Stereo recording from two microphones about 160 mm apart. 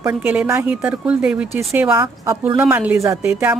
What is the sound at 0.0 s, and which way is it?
Speech, 10° right (ahead or behind).